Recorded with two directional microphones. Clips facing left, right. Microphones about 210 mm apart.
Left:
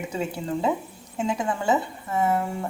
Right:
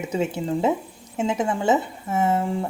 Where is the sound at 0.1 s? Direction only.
25° right (ahead or behind).